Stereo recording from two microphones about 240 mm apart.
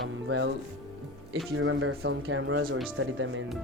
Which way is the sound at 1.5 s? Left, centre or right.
Right.